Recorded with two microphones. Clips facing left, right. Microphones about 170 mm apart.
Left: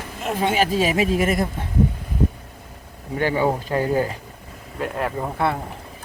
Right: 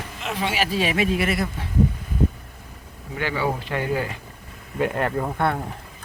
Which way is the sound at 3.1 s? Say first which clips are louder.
Left 5 dB; 40° left (ahead or behind).